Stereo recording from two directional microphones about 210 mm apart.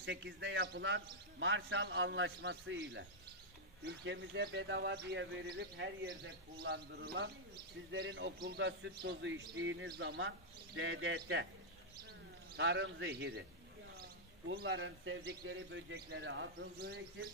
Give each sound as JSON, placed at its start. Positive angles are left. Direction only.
{"t": 0.0, "sound": "a man's voice", "side_deg": -55}
{"t": 12.5, "sound": "a man's voice", "side_deg": -55}
{"t": 14.5, "sound": "a man's voice", "side_deg": -60}